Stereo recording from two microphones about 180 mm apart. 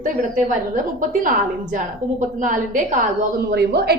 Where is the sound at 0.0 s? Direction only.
45° right (ahead or behind).